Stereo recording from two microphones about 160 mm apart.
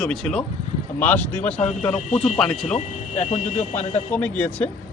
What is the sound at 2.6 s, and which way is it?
Speech, 45° left (ahead or behind).